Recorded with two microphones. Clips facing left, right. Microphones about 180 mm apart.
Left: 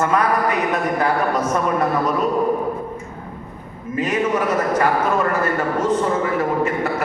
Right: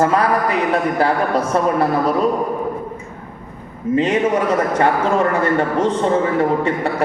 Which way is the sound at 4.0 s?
30° right (ahead or behind).